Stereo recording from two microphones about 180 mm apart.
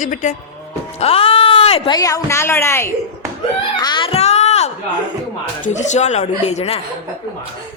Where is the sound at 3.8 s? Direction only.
25° left (ahead or behind).